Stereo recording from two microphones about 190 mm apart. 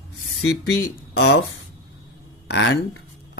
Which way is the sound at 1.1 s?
60° left (ahead or behind).